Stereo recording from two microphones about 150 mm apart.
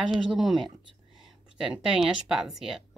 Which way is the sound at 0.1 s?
Centre (ahead or behind).